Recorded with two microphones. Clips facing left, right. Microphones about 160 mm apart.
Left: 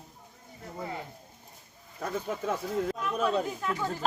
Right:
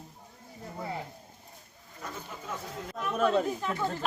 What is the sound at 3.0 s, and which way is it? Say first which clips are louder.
Speech: right 7 dB; centre (ahead or behind).